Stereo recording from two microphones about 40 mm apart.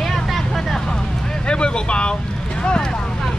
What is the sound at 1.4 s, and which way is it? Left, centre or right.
Speech, left.